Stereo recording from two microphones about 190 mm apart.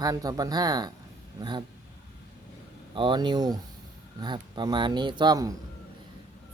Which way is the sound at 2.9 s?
25° right (ahead or behind).